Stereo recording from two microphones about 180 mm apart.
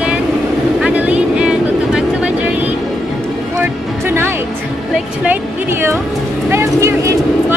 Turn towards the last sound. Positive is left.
turn(degrees=-15)  # may be behind; listen again after turning